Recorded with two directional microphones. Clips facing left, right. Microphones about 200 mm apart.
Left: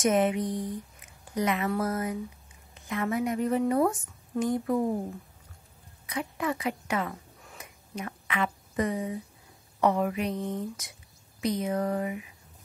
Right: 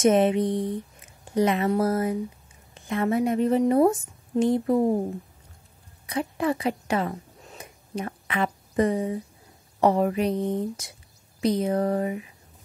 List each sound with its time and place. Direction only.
0.0 s a woman's voice: 30° right (ahead or behind)
6.0 s a woman's voice: 35° right (ahead or behind)
7.4 s a sound: 30° right (ahead or behind)
9.8 s speech: 35° right (ahead or behind)